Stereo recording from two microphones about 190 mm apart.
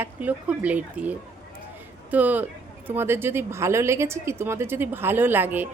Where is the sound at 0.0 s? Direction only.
10° right (ahead or behind).